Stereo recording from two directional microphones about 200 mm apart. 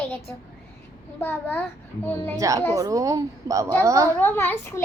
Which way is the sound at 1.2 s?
10° left (ahead or behind).